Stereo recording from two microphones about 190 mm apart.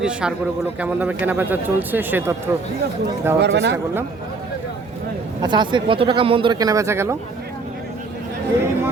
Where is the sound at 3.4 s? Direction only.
65° right (ahead or behind).